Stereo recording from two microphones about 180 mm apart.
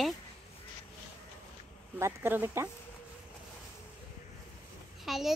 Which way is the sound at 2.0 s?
15° right (ahead or behind).